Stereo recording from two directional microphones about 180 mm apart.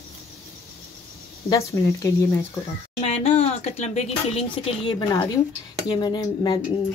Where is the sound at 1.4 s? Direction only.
15° left (ahead or behind).